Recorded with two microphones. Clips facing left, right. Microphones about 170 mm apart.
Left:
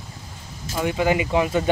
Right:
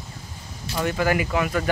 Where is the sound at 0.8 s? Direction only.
15° left (ahead or behind).